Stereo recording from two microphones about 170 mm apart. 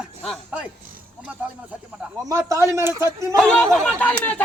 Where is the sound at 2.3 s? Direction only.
20° right (ahead or behind).